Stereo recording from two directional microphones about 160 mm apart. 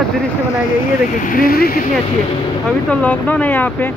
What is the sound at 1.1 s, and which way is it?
Speech, 60° left (ahead or behind).